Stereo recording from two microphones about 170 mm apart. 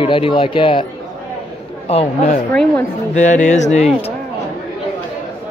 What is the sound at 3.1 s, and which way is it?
Music, 45° left (ahead or behind).